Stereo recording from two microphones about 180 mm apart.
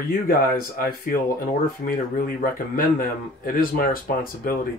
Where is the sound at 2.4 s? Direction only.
50° left (ahead or behind).